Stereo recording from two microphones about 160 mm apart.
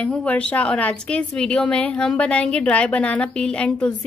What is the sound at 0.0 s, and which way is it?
A woman's voice, 5° left (ahead or behind).